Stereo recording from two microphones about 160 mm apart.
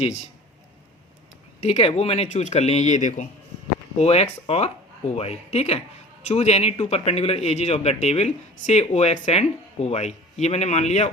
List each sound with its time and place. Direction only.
1.6 s a man's voice: 40° left (ahead or behind)